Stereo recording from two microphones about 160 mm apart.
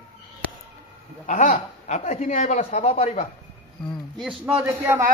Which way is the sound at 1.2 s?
55° left (ahead or behind).